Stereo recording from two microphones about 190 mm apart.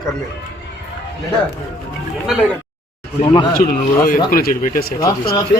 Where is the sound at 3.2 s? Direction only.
25° left (ahead or behind).